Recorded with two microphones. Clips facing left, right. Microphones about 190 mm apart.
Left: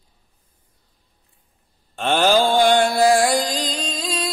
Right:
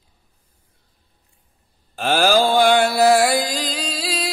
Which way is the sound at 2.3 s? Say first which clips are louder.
Even; 40° right (ahead or behind).